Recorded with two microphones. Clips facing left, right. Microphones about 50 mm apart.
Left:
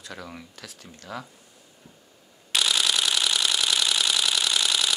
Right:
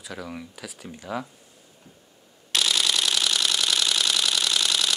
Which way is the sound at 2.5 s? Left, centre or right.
Centre.